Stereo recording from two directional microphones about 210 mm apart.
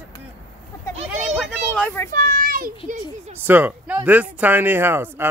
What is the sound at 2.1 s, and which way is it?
Speech, 40° right (ahead or behind).